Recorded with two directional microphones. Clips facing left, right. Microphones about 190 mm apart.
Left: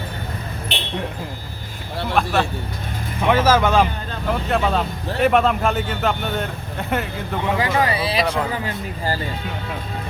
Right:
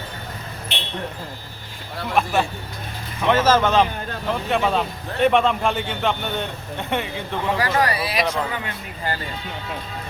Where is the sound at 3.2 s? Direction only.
10° left (ahead or behind).